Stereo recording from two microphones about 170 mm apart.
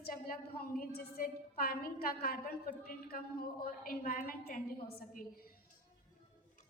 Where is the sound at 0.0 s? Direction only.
60° left (ahead or behind).